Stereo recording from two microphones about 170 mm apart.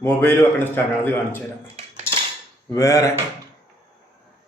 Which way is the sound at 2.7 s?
20° left (ahead or behind).